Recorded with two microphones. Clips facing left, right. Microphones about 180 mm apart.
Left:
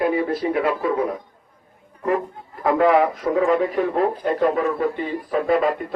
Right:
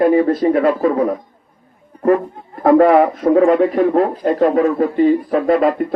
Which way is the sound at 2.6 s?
40° right (ahead or behind).